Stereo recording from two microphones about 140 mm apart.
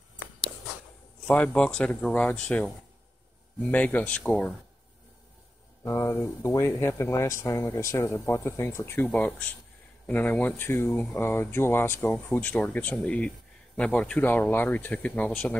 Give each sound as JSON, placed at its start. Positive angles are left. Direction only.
{"t": 1.2, "sound": "speech", "side_deg": 10}
{"t": 3.7, "sound": "speech", "side_deg": 10}
{"t": 5.9, "sound": "speech", "side_deg": 20}